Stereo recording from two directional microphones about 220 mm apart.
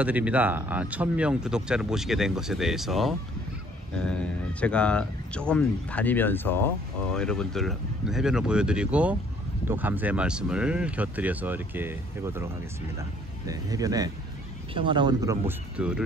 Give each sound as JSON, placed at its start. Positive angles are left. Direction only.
{"t": 0.0, "sound": "speech", "side_deg": -5}
{"t": 13.5, "sound": "speech", "side_deg": -15}